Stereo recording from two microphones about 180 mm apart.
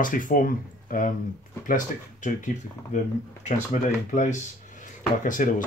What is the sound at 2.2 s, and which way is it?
Speech, 45° left (ahead or behind).